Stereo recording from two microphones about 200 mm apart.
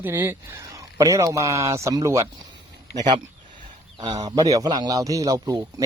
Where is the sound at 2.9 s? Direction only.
20° right (ahead or behind).